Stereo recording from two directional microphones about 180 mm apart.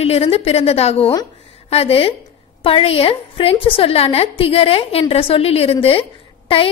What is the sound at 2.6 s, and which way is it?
A woman's voice, 30° left (ahead or behind).